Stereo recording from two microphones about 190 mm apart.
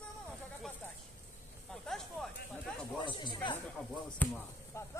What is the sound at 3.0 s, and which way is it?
Speech, 25° left (ahead or behind).